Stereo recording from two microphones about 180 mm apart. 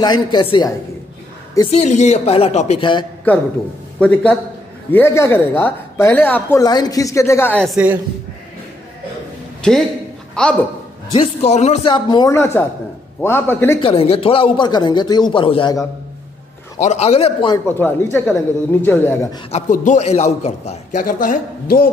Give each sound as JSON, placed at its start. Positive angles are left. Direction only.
{"t": 0.0, "sound": "speech", "side_deg": 25}
{"t": 1.7, "sound": "a woman's voice", "side_deg": 40}
{"t": 4.0, "sound": "speech", "side_deg": 5}
{"t": 6.6, "sound": "speech", "side_deg": 20}
{"t": 7.6, "sound": "a woman's voice", "side_deg": -5}
{"t": 9.6, "sound": "a man's voice", "side_deg": 0}
{"t": 11.1, "sound": "a woman's voice", "side_deg": 35}
{"t": 11.9, "sound": "speech", "side_deg": 25}
{"t": 13.7, "sound": "speech", "side_deg": 30}
{"t": 16.8, "sound": "a woman's voice", "side_deg": 40}
{"t": 17.6, "sound": "speech", "side_deg": 10}
{"t": 19.5, "sound": "a man's voice", "side_deg": 45}